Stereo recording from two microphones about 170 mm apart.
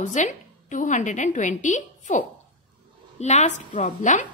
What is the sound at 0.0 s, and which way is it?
A woman's voice, 45° left (ahead or behind).